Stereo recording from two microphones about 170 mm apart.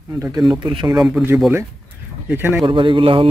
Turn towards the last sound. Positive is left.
turn(degrees=-35)  # may be behind; listen again after turning